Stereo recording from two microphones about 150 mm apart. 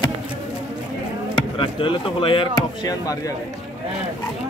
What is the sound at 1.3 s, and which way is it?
Speech, 35° left (ahead or behind).